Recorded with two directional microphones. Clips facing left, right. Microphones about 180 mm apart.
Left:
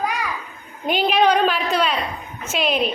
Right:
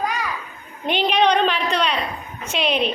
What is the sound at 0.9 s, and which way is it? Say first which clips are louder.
A woman's voice: left 1 dB; 5° left (ahead or behind).